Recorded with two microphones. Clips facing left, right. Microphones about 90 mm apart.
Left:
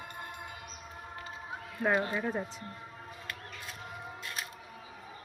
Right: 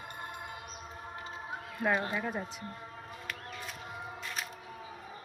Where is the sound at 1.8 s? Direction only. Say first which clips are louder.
Left 2 dB; 15° left (ahead or behind).